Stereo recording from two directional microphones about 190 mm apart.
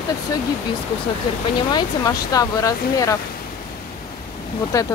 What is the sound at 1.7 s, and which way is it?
Speech, 20° left (ahead or behind).